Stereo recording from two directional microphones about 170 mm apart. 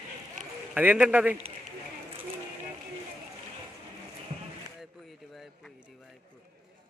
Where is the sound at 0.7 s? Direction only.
10° right (ahead or behind).